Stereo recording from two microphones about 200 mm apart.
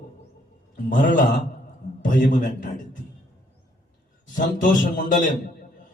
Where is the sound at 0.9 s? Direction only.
40° left (ahead or behind).